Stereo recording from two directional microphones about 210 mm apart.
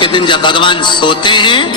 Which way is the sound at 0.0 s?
20° left (ahead or behind).